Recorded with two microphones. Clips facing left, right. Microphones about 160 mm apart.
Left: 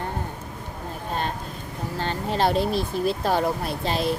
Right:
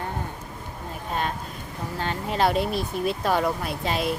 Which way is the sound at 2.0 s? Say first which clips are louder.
Even; 30° left (ahead or behind).